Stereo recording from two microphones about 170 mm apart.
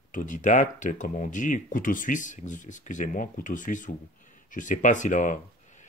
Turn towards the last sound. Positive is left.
turn(degrees=50)  # may be behind; listen again after turning